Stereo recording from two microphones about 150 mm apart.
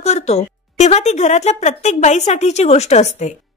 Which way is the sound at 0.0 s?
45° left (ahead or behind).